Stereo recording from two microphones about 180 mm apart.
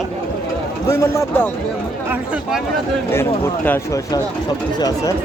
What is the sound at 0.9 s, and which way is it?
Speech, 15° left (ahead or behind).